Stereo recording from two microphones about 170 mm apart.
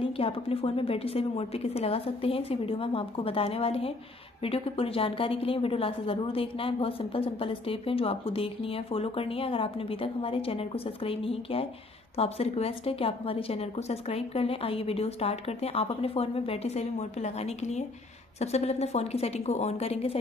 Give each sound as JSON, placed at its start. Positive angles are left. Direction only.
{"t": 0.0, "sound": "a woman's voice", "side_deg": 35}